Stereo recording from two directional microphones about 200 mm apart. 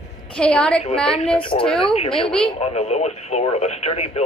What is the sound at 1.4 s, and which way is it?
Speech, 25° left (ahead or behind).